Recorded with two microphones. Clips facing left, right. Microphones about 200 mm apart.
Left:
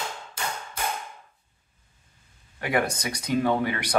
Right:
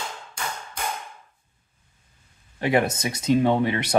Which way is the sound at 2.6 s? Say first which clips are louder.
Right 4 dB; 25° right (ahead or behind).